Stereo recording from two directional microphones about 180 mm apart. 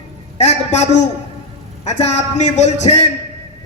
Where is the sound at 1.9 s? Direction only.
40° left (ahead or behind).